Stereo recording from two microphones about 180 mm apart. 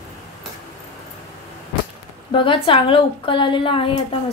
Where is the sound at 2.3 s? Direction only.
30° left (ahead or behind).